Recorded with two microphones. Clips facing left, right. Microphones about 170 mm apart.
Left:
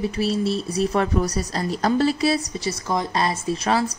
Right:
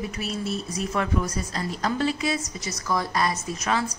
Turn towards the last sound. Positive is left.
turn(degrees=30)  # may be behind; listen again after turning